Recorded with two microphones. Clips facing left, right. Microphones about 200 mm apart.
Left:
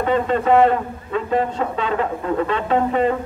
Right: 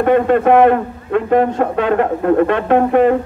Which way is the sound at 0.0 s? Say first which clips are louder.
Right 7 dB; 55° right (ahead or behind).